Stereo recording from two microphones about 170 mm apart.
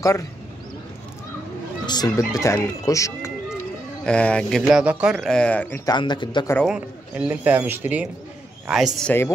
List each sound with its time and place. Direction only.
1.9 s speech: 20° left (ahead or behind)
4.0 s speech: 5° left (ahead or behind)
5.9 s speech: 25° left (ahead or behind)
6.6 s a man's voice: 5° right (ahead or behind)